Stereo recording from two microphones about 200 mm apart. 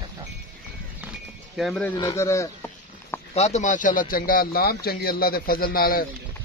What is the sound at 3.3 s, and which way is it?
Speech, 35° left (ahead or behind).